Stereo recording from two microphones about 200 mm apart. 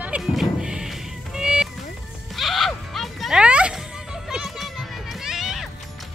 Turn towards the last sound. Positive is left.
turn(degrees=0)  # may be behind; listen again after turning